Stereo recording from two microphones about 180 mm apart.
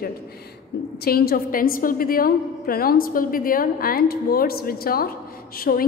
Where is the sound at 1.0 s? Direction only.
60° left (ahead or behind).